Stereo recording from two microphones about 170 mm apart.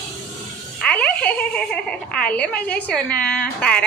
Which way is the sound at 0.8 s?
5° left (ahead or behind).